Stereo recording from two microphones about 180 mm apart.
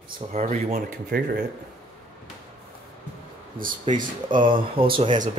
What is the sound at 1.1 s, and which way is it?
Speech, 65° right (ahead or behind).